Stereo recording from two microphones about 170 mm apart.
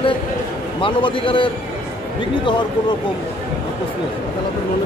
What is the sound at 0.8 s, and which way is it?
Speech, 30° left (ahead or behind).